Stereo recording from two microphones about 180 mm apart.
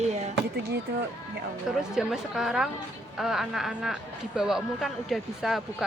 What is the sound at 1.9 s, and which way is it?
Speech, 5° right (ahead or behind).